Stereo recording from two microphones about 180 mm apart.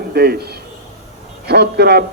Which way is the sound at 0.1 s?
60° right (ahead or behind).